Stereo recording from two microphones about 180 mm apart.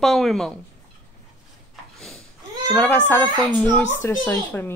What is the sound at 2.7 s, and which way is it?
Speech, 10° left (ahead or behind).